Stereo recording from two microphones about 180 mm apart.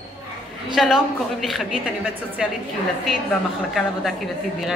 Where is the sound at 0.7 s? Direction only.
Centre (ahead or behind).